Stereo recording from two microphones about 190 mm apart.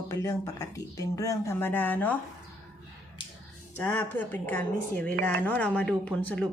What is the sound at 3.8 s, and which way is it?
Speech, 10° left (ahead or behind).